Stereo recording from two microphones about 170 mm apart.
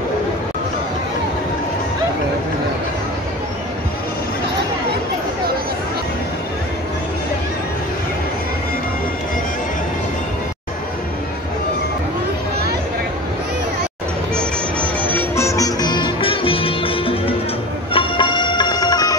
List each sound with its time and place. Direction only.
14.3 s music: 10° left (ahead or behind)